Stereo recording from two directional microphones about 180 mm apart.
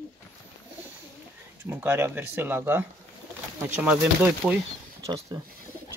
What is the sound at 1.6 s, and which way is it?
Speech, 10° right (ahead or behind).